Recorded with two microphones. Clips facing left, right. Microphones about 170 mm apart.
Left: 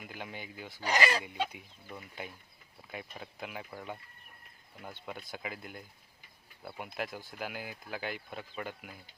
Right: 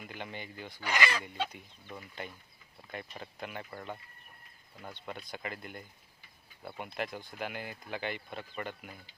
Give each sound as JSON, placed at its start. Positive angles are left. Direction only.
{"t": 0.0, "sound": "speech", "side_deg": 5}
{"t": 0.8, "sound": "speech", "side_deg": 35}
{"t": 1.2, "sound": "speech", "side_deg": 10}